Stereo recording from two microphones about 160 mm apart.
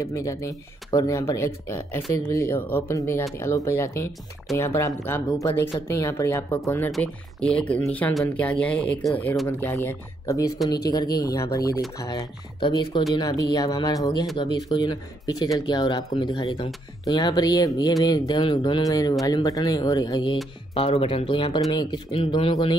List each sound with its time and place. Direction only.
0.0 s speech: 20° left (ahead or behind)
20.7 s speech: 35° left (ahead or behind)